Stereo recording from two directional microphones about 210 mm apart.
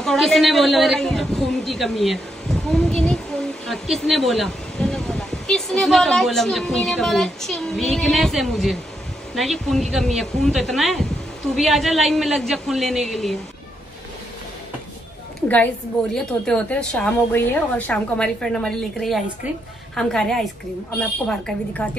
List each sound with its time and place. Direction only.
0.0 s a woman's voice: centre (ahead or behind)
15.4 s a woman's voice: 10° left (ahead or behind)